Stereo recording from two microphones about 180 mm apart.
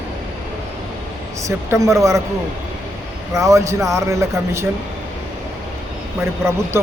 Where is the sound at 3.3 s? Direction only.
15° right (ahead or behind).